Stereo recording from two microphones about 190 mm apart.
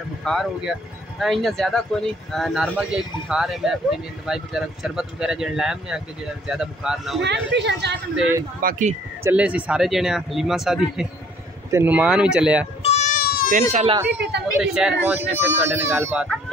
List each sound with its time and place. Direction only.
0.2 s speech: centre (ahead or behind)
7.2 s a woman's voice: 65° right (ahead or behind)
8.6 s speech: 40° right (ahead or behind)
9.2 s speech: 5° right (ahead or behind)
12.8 s baby cry: 35° left (ahead or behind)
13.2 s baby cry: 55° left (ahead or behind)
13.5 s speech: 40° right (ahead or behind)
14.6 s speech: 5° right (ahead or behind)